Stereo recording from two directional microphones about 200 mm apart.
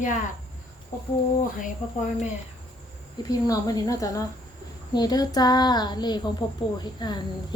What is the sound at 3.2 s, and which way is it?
Speech, 20° left (ahead or behind).